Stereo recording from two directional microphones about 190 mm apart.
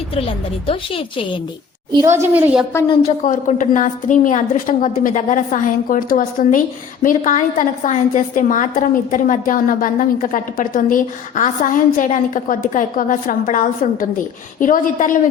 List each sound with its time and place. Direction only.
0.7 s a woman's voice: 30° left (ahead or behind)
1.9 s a woman's voice: 20° right (ahead or behind)
3.2 s a woman's voice: 45° left (ahead or behind)